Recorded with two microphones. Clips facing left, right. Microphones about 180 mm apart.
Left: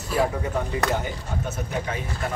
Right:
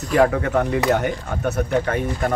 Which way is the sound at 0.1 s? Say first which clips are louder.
Right 7 dB; 75° right (ahead or behind).